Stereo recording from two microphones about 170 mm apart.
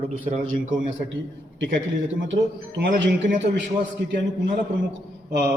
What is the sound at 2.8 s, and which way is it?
Speech, 90° right.